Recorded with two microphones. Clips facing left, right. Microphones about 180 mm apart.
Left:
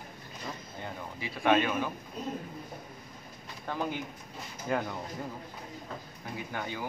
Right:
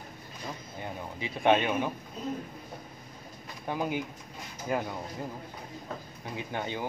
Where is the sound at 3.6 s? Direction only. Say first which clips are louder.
Right 3 dB; 15° right (ahead or behind).